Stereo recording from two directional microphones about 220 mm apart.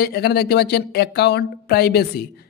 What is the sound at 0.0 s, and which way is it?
Speech, 45° left (ahead or behind).